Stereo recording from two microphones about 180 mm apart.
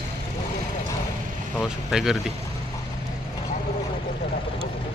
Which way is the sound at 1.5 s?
Centre (ahead or behind).